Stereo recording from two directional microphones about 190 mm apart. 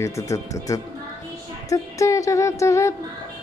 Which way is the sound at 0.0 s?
15° left (ahead or behind).